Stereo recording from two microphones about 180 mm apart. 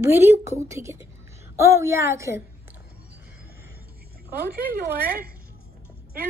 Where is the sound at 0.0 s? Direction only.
15° right (ahead or behind).